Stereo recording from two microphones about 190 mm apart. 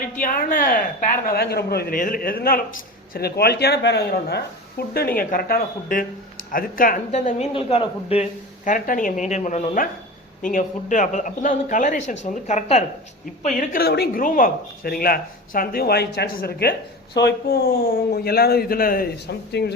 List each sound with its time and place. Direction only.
0.0 s a sound: 50° left (ahead or behind)
1.3 s a man's voice: 55° left (ahead or behind); by 12.8 s 35° left (ahead or behind)
13.6 s a man's voice: 50° left (ahead or behind)